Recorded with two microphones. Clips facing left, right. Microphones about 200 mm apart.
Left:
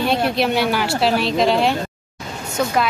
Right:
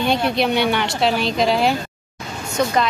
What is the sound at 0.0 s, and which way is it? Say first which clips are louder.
A woman's voice: even; centre (ahead or behind).